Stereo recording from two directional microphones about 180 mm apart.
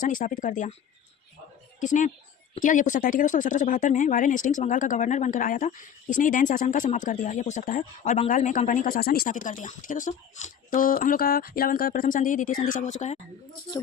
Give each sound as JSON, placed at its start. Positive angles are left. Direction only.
{"t": 0.0, "sound": "speech", "side_deg": 50}
{"t": 1.8, "sound": "speech", "side_deg": 45}